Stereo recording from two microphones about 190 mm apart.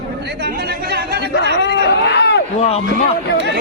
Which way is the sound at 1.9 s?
65° left (ahead or behind).